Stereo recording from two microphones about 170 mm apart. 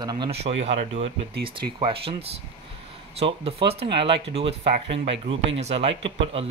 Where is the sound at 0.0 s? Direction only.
25° right (ahead or behind).